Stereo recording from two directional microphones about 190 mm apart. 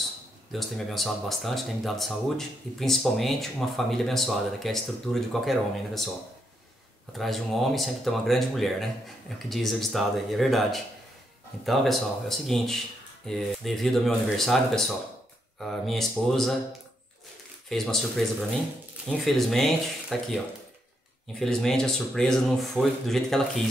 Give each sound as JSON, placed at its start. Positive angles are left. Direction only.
{"t": 0.5, "sound": "speech", "side_deg": 0}
{"t": 7.1, "sound": "speech", "side_deg": 0}
{"t": 17.6, "sound": "speech", "side_deg": 0}
{"t": 21.4, "sound": "speech", "side_deg": 5}